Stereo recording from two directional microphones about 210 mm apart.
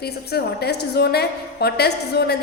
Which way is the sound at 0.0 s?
50° left (ahead or behind).